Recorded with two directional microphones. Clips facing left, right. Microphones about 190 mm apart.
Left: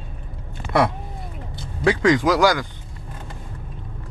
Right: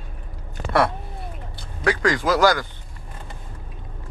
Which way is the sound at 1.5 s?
20° left (ahead or behind).